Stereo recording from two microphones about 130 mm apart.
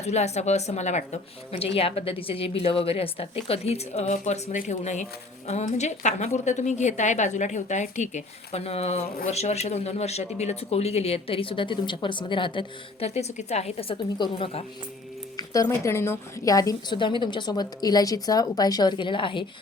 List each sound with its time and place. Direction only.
0.0 s a woman's voice: 60° left (ahead or behind); by 13.1 s 40° left (ahead or behind)
13.1 s a woman's voice: 55° left (ahead or behind)
15.4 s a woman's voice: 25° left (ahead or behind)